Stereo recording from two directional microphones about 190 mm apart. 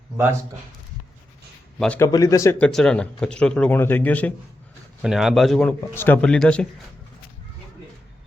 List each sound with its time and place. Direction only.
2.0 s a man's voice: 15° left (ahead or behind)